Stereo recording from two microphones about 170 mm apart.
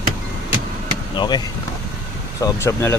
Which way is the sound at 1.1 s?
25° left (ahead or behind).